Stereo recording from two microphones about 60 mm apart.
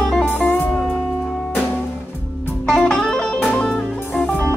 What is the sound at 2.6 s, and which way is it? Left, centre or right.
Music, centre.